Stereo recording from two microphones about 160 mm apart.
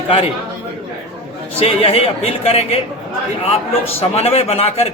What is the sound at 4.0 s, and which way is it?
Speech, 40° left (ahead or behind).